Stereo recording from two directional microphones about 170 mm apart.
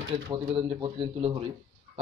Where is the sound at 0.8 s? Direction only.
30° right (ahead or behind).